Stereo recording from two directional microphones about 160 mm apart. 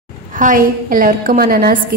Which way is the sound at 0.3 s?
55° right (ahead or behind).